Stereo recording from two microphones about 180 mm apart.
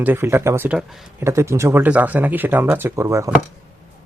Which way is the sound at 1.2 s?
15° right (ahead or behind).